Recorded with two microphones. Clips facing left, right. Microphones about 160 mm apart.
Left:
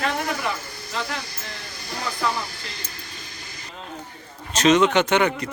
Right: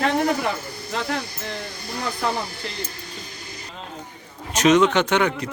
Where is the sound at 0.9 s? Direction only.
55° right (ahead or behind).